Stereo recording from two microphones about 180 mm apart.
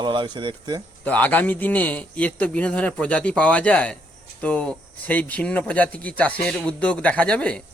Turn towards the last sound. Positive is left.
turn(degrees=5)  # may be behind; listen again after turning